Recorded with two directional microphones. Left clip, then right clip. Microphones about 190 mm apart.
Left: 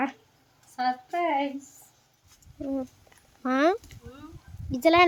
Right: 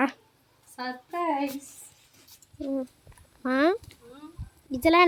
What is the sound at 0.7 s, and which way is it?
Speech, 5° right (ahead or behind).